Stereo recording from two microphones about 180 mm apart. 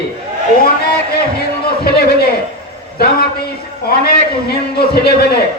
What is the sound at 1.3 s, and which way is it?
Speech, 60° left (ahead or behind).